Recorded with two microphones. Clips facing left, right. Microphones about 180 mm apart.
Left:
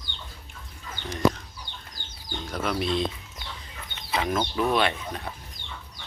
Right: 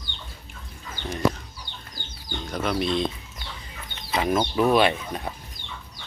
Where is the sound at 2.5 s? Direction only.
5° left (ahead or behind).